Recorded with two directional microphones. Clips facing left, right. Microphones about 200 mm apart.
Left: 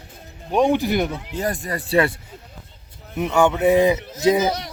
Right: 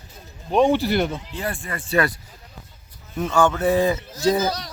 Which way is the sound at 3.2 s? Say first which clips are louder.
Left 2 dB; 20° left (ahead or behind).